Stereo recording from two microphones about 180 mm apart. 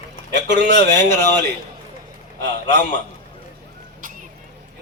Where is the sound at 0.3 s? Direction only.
75° right (ahead or behind).